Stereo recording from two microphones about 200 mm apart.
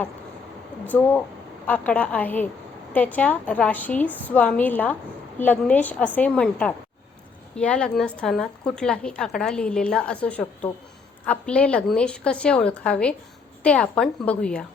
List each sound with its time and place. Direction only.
1.6 s a woman's voice: 10° left (ahead or behind)